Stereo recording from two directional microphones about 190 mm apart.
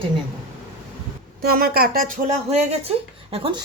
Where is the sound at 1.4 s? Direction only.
50° right (ahead or behind).